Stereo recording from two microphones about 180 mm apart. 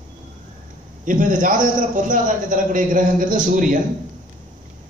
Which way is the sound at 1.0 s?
45° right (ahead or behind).